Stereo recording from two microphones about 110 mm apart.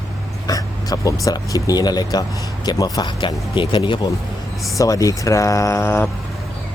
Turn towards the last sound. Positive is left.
turn(degrees=20)  # may be behind; listen again after turning